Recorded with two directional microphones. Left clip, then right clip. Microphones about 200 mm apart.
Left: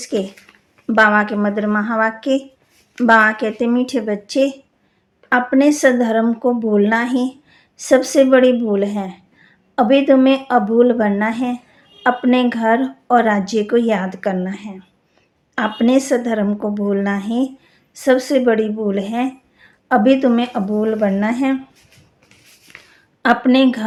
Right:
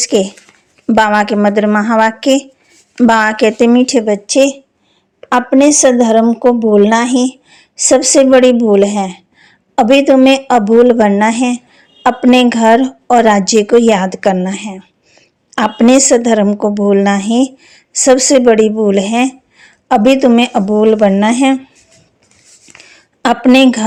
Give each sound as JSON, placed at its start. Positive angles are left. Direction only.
{"t": 0.0, "sound": "speech", "side_deg": -40}
{"t": 23.2, "sound": "speech", "side_deg": -40}